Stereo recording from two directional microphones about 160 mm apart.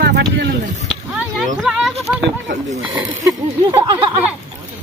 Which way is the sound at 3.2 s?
20° right (ahead or behind).